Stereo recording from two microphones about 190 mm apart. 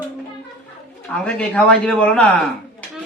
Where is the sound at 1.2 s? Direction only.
5° left (ahead or behind).